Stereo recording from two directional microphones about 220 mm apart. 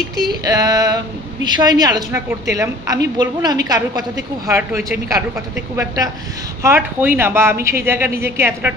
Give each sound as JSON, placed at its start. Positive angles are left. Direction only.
{"t": 0.3, "sound": "a woman's voice", "side_deg": -15}
{"t": 6.6, "sound": "a woman's voice", "side_deg": -10}